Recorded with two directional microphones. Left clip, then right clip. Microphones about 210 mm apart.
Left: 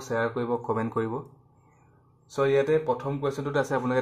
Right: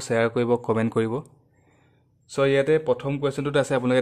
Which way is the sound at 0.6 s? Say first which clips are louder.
Right 4 dB; 45° right (ahead or behind).